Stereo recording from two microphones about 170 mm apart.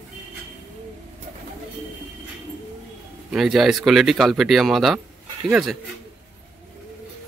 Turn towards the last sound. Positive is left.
turn(degrees=0)  # may be behind; listen again after turning